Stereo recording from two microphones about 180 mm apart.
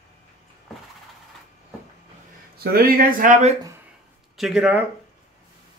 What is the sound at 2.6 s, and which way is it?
Speech, 55° right (ahead or behind).